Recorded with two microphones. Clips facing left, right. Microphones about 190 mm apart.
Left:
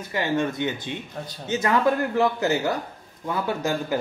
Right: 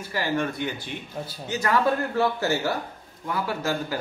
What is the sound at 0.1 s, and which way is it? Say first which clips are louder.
Speech: left 2 dB; 20° left (ahead or behind).